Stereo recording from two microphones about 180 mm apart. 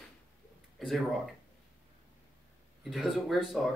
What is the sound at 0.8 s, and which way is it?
Speech, centre (ahead or behind).